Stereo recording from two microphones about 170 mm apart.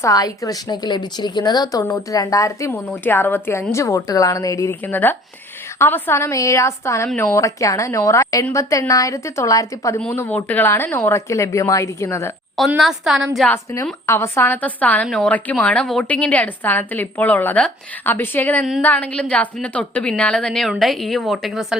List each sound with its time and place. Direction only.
0.0 s a woman's voice: 20° left (ahead or behind)
12.5 s a woman's voice: centre (ahead or behind)
13.5 s a woman's voice: 15° left (ahead or behind); by 21.8 s centre (ahead or behind)